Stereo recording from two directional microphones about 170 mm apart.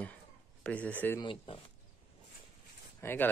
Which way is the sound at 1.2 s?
30° left (ahead or behind).